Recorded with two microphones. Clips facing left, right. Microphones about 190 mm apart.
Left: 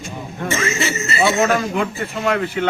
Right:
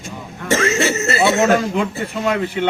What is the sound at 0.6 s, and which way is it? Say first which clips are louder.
Speech: right 6 dB; 65° right (ahead or behind).